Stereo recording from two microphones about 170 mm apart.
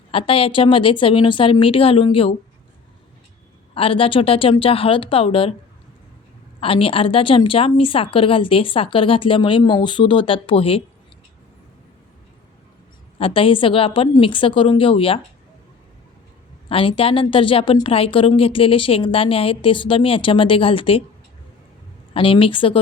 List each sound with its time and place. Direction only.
0.1 s a woman's voice: 30° left (ahead or behind)
3.8 s a woman's voice: 30° left (ahead or behind)
6.6 s a woman's voice: 35° left (ahead or behind)
13.1 s a woman's voice: 30° left (ahead or behind)
16.6 s a woman's voice: 30° left (ahead or behind)
22.1 s a woman's voice: 30° left (ahead or behind)